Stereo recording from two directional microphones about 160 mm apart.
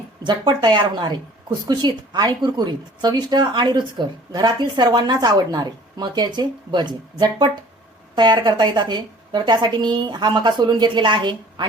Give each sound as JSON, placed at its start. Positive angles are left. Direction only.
{"t": 0.2, "sound": "speech", "side_deg": -30}